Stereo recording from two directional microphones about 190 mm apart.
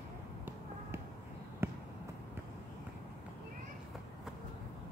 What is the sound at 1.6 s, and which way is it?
Basketball bounce, 10° right (ahead or behind).